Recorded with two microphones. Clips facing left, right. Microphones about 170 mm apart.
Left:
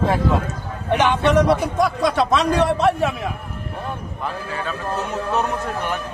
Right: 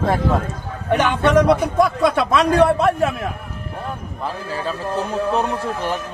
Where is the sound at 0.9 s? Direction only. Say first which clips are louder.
Right 1 dB; 50° right (ahead or behind).